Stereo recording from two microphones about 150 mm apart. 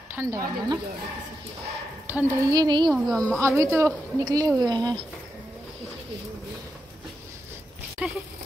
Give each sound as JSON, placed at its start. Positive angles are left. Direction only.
{"t": 0.1, "sound": "a woman's voice", "side_deg": -20}
{"t": 2.0, "sound": "a sound", "side_deg": -10}
{"t": 2.5, "sound": "a woman's voice", "side_deg": -30}
{"t": 2.9, "sound": "a woman's voice", "side_deg": 5}
{"t": 3.3, "sound": "a woman's voice", "side_deg": -20}
{"t": 8.0, "sound": "a sound", "side_deg": -10}